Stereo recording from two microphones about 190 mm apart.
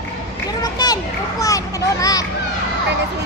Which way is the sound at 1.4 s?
15° left (ahead or behind).